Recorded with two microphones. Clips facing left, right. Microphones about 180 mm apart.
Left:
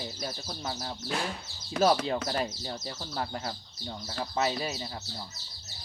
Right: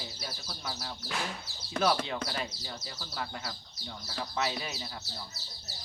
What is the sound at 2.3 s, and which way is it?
Speech, 40° left (ahead or behind).